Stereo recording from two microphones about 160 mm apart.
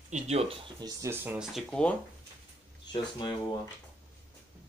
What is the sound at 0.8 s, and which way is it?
Speech, 20° right (ahead or behind).